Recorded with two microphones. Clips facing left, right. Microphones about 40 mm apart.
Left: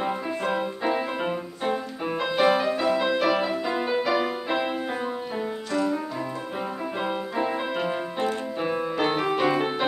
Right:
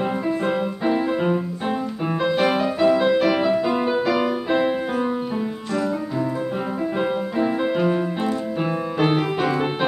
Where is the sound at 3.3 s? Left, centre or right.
Centre.